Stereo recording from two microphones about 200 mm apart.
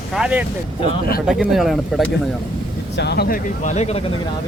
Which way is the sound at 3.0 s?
55° left (ahead or behind).